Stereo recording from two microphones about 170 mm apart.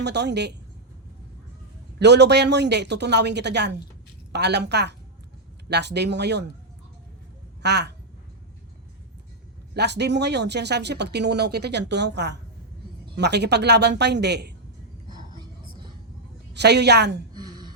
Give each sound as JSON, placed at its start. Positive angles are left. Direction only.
{"t": 0.0, "sound": "speech", "side_deg": -85}
{"t": 2.0, "sound": "speech", "side_deg": -85}
{"t": 7.6, "sound": "speech", "side_deg": -80}
{"t": 9.7, "sound": "speech", "side_deg": -85}
{"t": 15.1, "sound": "whispering", "side_deg": -25}
{"t": 16.6, "sound": "speech", "side_deg": -80}
{"t": 17.3, "sound": "a sound", "side_deg": -25}